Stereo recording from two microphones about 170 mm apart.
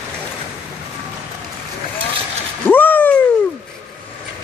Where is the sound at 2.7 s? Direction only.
10° left (ahead or behind).